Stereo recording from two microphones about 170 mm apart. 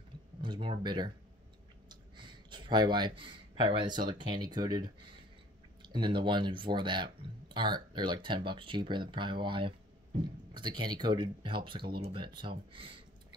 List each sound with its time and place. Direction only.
0.4 s speech: 30° right (ahead or behind)